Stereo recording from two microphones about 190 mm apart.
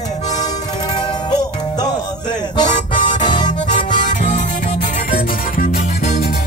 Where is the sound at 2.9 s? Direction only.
40° left (ahead or behind).